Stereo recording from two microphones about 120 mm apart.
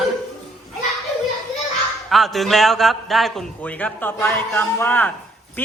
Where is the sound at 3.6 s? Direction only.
15° left (ahead or behind).